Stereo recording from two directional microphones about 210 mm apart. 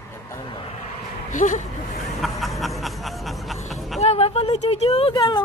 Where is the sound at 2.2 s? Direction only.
Centre (ahead or behind).